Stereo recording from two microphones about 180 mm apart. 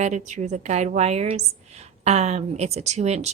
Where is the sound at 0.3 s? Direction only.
45° right (ahead or behind).